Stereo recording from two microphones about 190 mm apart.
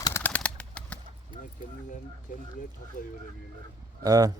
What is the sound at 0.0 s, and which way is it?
Bird, 10° left (ahead or behind).